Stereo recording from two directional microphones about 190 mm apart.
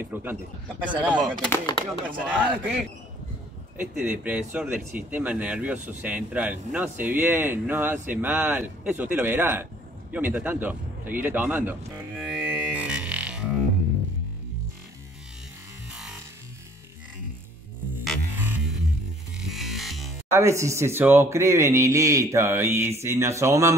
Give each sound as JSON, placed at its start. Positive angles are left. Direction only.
{"t": 0.0, "sound": "speech", "side_deg": -10}
{"t": 1.5, "sound": "chopping", "side_deg": 20}
{"t": 2.0, "sound": "speech", "side_deg": -10}
{"t": 3.7, "sound": "speech", "side_deg": -10}
{"t": 12.2, "sound": "music", "side_deg": -5}
{"t": 15.9, "sound": "music", "side_deg": -5}
{"t": 18.4, "sound": "music", "side_deg": -10}
{"t": 20.2, "sound": "speech", "side_deg": -15}